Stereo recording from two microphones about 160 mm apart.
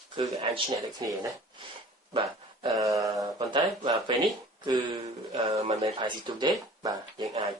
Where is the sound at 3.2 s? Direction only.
20° right (ahead or behind).